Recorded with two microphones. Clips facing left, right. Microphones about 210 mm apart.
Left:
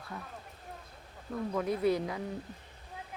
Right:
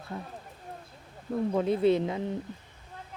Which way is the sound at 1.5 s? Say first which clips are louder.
Right 5 dB; 25° right (ahead or behind).